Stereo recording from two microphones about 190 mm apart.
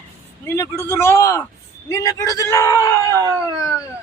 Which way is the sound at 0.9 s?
15° left (ahead or behind).